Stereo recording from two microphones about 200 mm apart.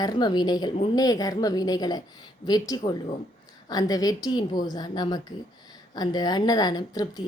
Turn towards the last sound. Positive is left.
turn(degrees=20)  # may be behind; listen again after turning